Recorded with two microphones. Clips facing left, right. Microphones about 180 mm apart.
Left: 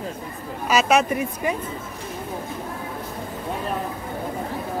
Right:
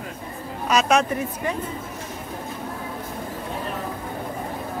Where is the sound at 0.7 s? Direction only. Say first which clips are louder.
Left 1 dB; 5° left (ahead or behind).